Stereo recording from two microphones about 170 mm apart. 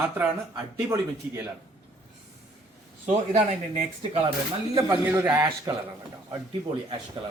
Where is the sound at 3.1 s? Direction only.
45° right (ahead or behind).